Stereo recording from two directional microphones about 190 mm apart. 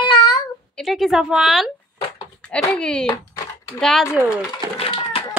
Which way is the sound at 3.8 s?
5° left (ahead or behind).